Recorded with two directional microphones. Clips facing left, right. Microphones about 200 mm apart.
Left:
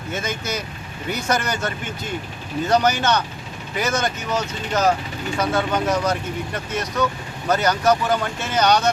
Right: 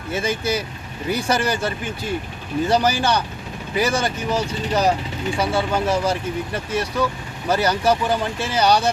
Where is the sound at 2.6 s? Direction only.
10° right (ahead or behind).